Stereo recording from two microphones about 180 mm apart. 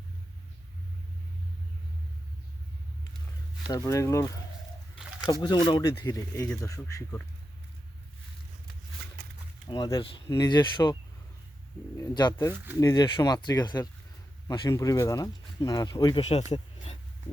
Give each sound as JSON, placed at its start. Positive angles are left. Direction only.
{"t": 3.7, "sound": "speech", "side_deg": 20}
{"t": 5.3, "sound": "speech", "side_deg": 25}
{"t": 9.6, "sound": "speech", "side_deg": 25}
{"t": 11.9, "sound": "speech", "side_deg": 25}
{"t": 16.3, "sound": "a sound", "side_deg": 35}